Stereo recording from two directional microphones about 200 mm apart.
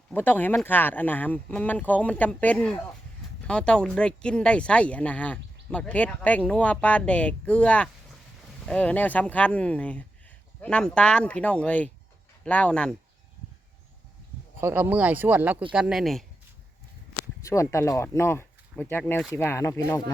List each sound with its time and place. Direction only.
0.1 s speech: 10° left (ahead or behind)
14.6 s speech: 10° right (ahead or behind)
17.5 s speech: 15° left (ahead or behind)